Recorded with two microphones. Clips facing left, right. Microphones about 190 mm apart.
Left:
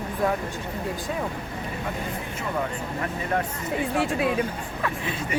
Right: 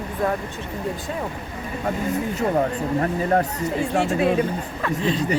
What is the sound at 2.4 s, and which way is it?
Speech, 40° right (ahead or behind).